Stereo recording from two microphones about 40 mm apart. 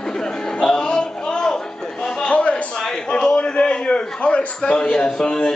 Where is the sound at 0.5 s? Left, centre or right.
Left.